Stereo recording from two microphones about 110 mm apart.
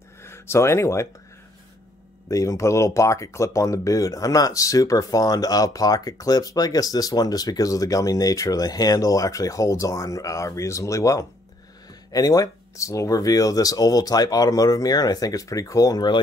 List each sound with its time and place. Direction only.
0.2 s speech: 25° left (ahead or behind)
2.2 s speech: 30° left (ahead or behind)